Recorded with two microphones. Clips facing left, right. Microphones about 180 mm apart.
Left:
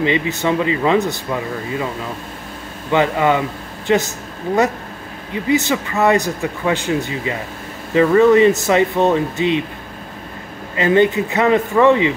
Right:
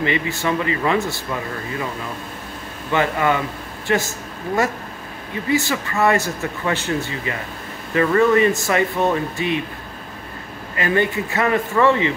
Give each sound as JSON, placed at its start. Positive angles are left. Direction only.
{"t": 0.0, "sound": "speech", "side_deg": 20}
{"t": 2.9, "sound": "speech", "side_deg": 20}
{"t": 5.3, "sound": "speech", "side_deg": 20}
{"t": 10.8, "sound": "speech", "side_deg": 20}